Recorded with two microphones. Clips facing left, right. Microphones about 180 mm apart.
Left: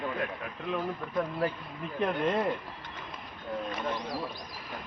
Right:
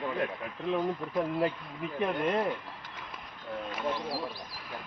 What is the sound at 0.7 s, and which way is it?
Speech, 20° right (ahead or behind).